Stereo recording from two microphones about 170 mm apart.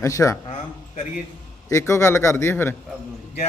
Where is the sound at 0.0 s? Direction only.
20° left (ahead or behind).